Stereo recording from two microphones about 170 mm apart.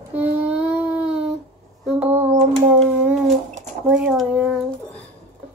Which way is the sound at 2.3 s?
35° right (ahead or behind).